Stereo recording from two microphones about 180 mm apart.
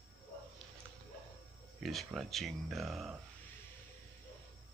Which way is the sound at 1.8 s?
Centre (ahead or behind).